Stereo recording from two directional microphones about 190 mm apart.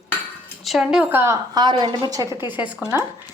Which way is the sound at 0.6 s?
Centre (ahead or behind).